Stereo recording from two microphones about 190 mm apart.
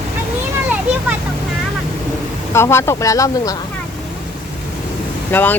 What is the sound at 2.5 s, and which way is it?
Speech, 15° left (ahead or behind).